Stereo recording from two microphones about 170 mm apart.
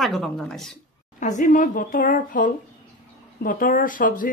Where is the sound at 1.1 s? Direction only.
50° left (ahead or behind).